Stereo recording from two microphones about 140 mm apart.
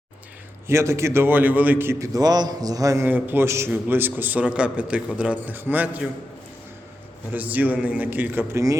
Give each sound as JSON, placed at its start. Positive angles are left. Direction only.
{"t": 0.7, "sound": "a man's voice", "side_deg": -20}
{"t": 3.1, "sound": "a man's voice", "side_deg": -15}
{"t": 7.3, "sound": "a man's voice", "side_deg": -10}